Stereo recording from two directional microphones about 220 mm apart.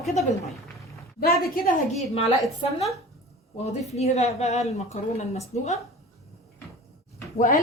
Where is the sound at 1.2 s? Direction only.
45° left (ahead or behind).